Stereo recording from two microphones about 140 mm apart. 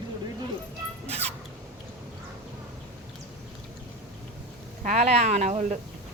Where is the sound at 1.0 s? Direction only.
50° right (ahead or behind).